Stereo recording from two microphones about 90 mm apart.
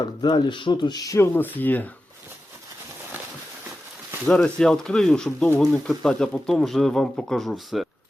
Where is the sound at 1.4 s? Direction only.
20° left (ahead or behind).